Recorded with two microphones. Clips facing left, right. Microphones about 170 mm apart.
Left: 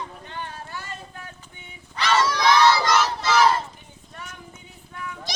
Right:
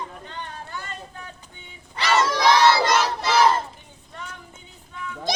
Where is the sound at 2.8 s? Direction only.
30° right (ahead or behind).